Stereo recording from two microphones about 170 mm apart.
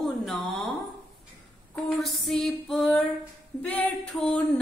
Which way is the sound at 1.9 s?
Centre (ahead or behind).